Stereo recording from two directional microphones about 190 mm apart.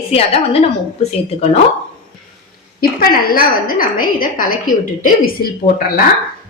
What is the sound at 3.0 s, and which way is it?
A woman's voice, 50° left (ahead or behind).